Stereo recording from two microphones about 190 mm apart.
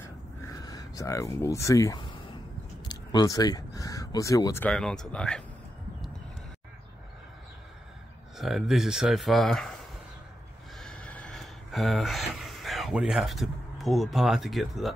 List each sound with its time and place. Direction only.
0.4 s speech: 15° left (ahead or behind)
4.6 s speech: 5° left (ahead or behind)
8.4 s speech: centre (ahead or behind)
10.8 s a sound: 5° left (ahead or behind)